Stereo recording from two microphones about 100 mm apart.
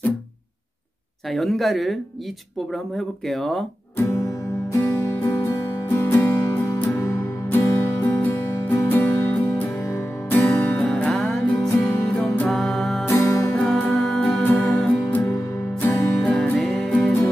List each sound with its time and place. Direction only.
1.3 s speech: centre (ahead or behind)
3.3 s speech: 5° left (ahead or behind)
4.0 s music: 30° left (ahead or behind)
11.1 s music: 5° left (ahead or behind)
13.0 s music: 25° left (ahead or behind)
13.6 s music: 5° left (ahead or behind)
14.4 s music: 30° left (ahead or behind)
14.7 s music: 5° left (ahead or behind)
15.0 s music: 15° left (ahead or behind)
15.8 s music: 25° left (ahead or behind)
16.5 s music: centre (ahead or behind)
16.9 s music: 15° left (ahead or behind)